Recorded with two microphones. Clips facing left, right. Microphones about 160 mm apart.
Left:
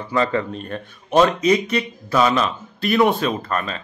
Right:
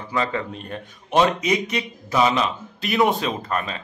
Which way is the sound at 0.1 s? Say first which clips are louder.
Left 4 dB; 10° right (ahead or behind).